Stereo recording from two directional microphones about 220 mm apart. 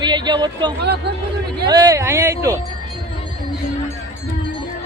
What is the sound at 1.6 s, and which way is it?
Speech, 15° right (ahead or behind).